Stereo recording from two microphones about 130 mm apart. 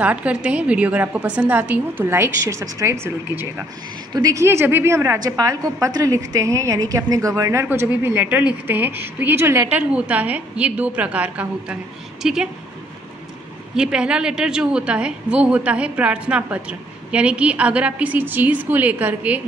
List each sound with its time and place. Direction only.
0.0 s a woman's voice: 10° right (ahead or behind)
13.7 s a woman's voice: 5° right (ahead or behind)